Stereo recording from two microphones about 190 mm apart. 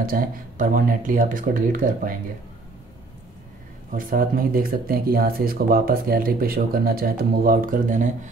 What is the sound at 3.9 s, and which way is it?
Speech, 50° right (ahead or behind).